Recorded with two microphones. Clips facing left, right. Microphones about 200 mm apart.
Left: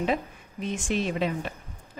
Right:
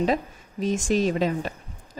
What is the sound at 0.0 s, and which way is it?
A woman's voice, 40° right (ahead or behind).